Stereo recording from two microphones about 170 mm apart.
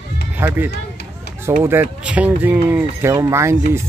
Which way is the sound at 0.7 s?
70° left (ahead or behind).